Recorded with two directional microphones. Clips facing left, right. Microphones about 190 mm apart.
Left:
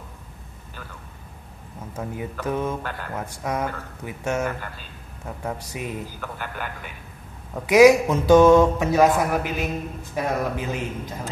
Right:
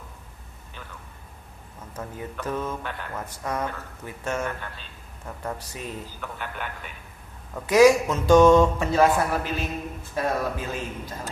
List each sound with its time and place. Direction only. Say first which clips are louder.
2.0 s speech: left 3 dB; 10° left (ahead or behind)
6.3 s a man's voice: even; 5° left (ahead or behind)